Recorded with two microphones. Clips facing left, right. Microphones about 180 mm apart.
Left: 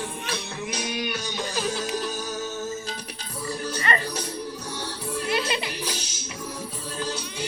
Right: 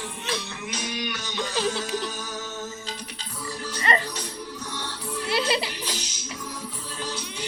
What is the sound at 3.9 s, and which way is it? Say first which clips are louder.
Speech: right 2 dB; 30° right (ahead or behind).